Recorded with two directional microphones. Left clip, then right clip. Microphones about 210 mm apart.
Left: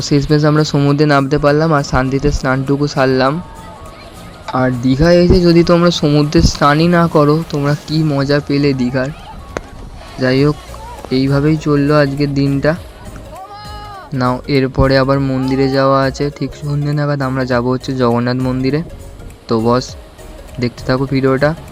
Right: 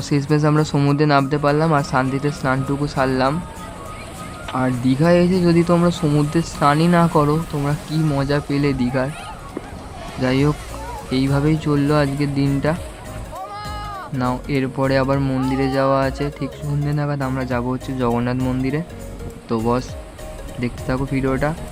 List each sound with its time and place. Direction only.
0.1 s speech: 15° left (ahead or behind)
4.5 s speech: 15° left (ahead or behind)
10.2 s speech: 15° left (ahead or behind)
14.2 s speech: 20° left (ahead or behind)